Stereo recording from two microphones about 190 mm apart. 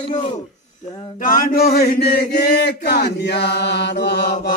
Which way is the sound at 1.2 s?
50° left (ahead or behind).